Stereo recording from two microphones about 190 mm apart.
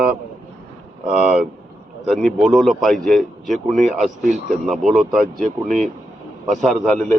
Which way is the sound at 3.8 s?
40° right (ahead or behind).